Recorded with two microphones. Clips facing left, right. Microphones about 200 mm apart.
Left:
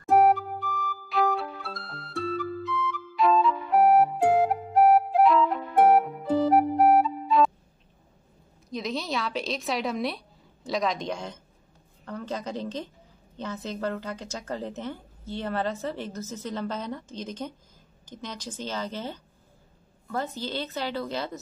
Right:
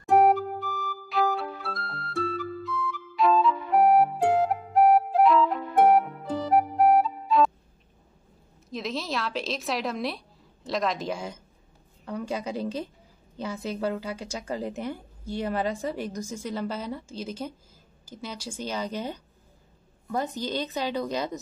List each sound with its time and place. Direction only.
0.1 s music: centre (ahead or behind)
8.6 s a woman's voice: centre (ahead or behind)